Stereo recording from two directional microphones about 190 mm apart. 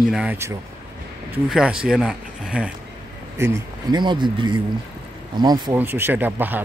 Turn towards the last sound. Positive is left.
turn(degrees=-10)  # may be behind; listen again after turning